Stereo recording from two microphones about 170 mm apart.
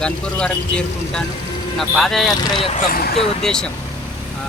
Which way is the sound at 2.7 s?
55° left (ahead or behind).